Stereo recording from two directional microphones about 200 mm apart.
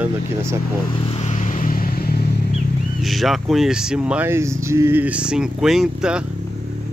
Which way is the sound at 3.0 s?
Centre (ahead or behind).